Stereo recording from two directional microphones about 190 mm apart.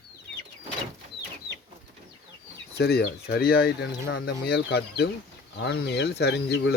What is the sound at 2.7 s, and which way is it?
Speech, 60° left (ahead or behind).